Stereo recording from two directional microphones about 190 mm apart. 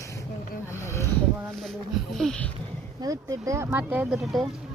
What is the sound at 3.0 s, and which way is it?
Speech, 20° right (ahead or behind).